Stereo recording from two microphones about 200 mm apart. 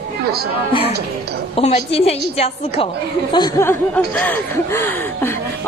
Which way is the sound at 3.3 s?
15° left (ahead or behind).